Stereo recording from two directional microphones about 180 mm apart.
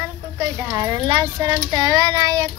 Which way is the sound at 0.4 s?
20° right (ahead or behind).